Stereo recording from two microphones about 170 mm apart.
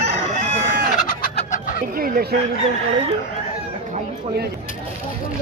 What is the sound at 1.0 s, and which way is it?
Chicken, 50° left (ahead or behind).